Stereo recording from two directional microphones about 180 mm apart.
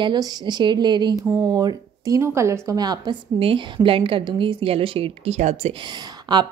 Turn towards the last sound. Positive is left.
turn(degrees=-25)  # may be behind; listen again after turning